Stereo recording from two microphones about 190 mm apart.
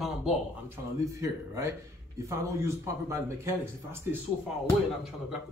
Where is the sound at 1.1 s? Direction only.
15° right (ahead or behind).